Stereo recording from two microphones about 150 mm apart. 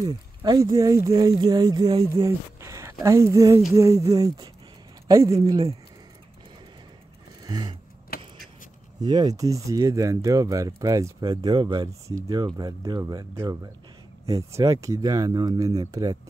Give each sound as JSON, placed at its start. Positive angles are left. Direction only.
{"t": 0.0, "sound": "speech", "side_deg": -25}
{"t": 7.4, "sound": "a sound", "side_deg": -30}
{"t": 8.1, "sound": "vehicle", "side_deg": 85}
{"t": 9.0, "sound": "speech", "side_deg": -25}